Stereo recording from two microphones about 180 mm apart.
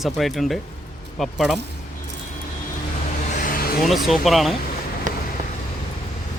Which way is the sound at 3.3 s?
50° left (ahead or behind).